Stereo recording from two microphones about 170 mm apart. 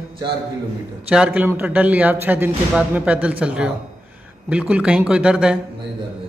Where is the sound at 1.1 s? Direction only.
5° right (ahead or behind).